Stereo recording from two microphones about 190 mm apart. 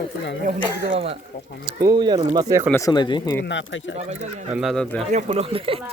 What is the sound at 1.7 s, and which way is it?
Speech, 20° right (ahead or behind).